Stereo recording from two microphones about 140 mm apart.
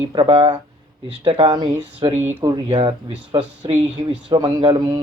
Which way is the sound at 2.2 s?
15° right (ahead or behind).